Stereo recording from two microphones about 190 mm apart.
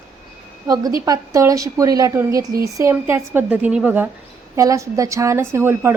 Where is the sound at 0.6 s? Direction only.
20° right (ahead or behind).